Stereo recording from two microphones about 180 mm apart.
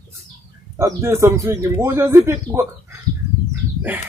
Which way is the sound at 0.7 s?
15° right (ahead or behind).